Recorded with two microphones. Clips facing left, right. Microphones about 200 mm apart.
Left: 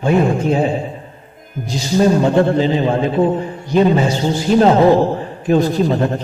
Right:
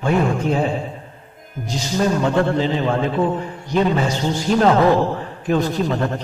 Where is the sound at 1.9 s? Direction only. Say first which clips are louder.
Left 6 dB; 30° left (ahead or behind).